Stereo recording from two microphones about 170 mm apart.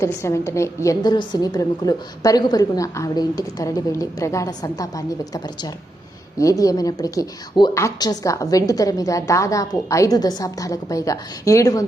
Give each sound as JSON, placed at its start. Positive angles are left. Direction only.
{"t": 0.0, "sound": "a woman's voice", "side_deg": 15}